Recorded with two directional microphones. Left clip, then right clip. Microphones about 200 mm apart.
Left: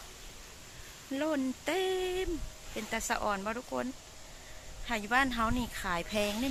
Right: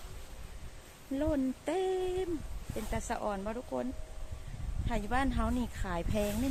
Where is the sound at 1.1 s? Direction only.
15° right (ahead or behind).